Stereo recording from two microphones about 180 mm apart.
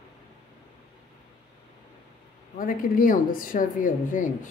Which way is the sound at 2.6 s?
50° left (ahead or behind).